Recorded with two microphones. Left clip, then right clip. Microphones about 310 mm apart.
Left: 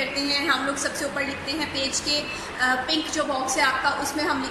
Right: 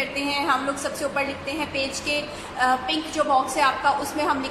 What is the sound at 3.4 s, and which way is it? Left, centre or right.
Speech, centre.